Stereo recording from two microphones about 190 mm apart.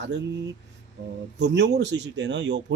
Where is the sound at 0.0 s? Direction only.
65° right (ahead or behind).